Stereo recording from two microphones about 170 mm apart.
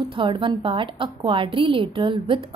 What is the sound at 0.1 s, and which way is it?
A woman's voice, 30° right (ahead or behind).